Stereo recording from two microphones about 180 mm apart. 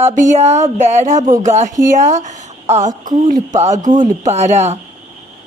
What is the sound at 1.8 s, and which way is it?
A woman's voice, 45° right (ahead or behind).